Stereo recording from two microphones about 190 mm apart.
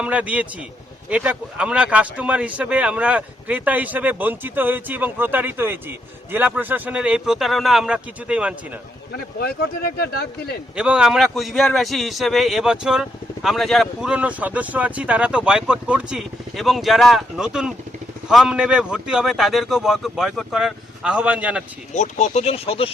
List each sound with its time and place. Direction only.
0.0 s a man's voice: 5° right (ahead or behind)
9.1 s speech: 55° left (ahead or behind)
10.8 s a man's voice: 5° right (ahead or behind)
21.9 s speech: 40° left (ahead or behind)